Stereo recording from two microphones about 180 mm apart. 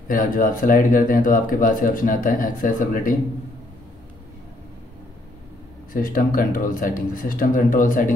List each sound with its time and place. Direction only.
0.1 s speech: 50° left (ahead or behind)
5.9 s speech: 50° left (ahead or behind)